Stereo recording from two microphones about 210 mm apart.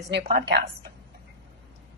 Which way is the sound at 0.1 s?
50° right (ahead or behind).